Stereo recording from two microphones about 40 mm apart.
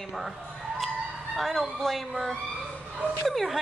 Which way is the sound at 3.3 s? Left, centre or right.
Centre.